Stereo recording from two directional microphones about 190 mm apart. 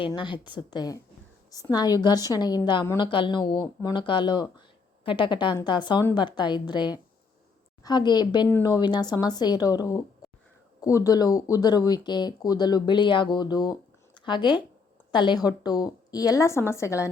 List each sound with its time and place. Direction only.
0.0 s speech: 25° left (ahead or behind)
8.4 s speech: 10° left (ahead or behind)
8.7 s speech: 25° left (ahead or behind)